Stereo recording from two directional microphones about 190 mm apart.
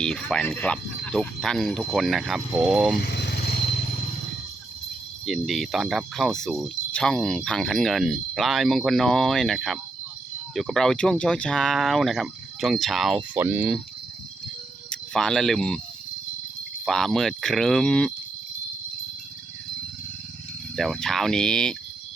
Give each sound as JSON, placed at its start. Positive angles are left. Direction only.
{"t": 0.0, "sound": "speech", "side_deg": 5}
{"t": 3.0, "sound": "vehicle", "side_deg": 60}
{"t": 5.2, "sound": "speech", "side_deg": 0}
{"t": 14.8, "sound": "speech", "side_deg": 5}
{"t": 16.8, "sound": "speech", "side_deg": 0}
{"t": 20.7, "sound": "speech", "side_deg": 0}